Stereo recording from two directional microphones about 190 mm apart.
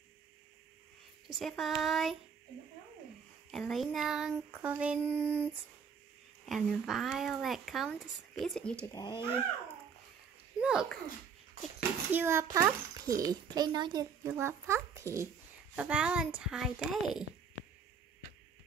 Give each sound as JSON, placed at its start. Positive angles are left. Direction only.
{"t": 1.2, "sound": "speech", "side_deg": 0}
{"t": 3.5, "sound": "a child's voice", "side_deg": 0}
{"t": 6.4, "sound": "speech", "side_deg": 0}
{"t": 8.9, "sound": "speech", "side_deg": 20}
{"t": 10.6, "sound": "speech", "side_deg": -5}
{"t": 12.1, "sound": "a child's voice", "side_deg": -10}